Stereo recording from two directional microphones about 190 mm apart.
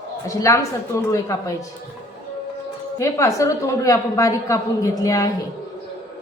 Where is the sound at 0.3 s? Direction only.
15° left (ahead or behind).